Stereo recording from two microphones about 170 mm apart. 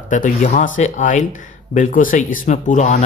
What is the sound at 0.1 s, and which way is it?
A man's voice, 50° left (ahead or behind).